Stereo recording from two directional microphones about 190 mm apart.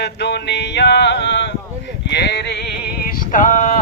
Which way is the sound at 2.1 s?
65° left (ahead or behind).